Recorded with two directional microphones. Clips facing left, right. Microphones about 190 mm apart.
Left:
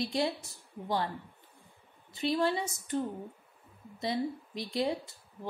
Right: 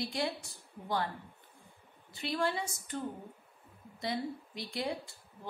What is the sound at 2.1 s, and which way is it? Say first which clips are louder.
A woman's voice: left 4 dB; 20° left (ahead or behind).